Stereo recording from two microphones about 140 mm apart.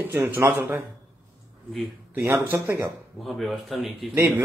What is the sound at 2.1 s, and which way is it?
Speech, 15° right (ahead or behind).